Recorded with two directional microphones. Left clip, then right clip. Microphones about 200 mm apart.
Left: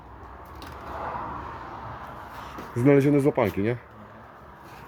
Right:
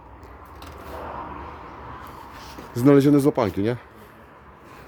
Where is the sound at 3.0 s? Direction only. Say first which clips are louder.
Right 3 dB; 25° right (ahead or behind).